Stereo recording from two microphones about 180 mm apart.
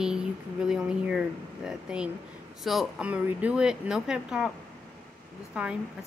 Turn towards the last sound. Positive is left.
turn(degrees=-5)  # may be behind; listen again after turning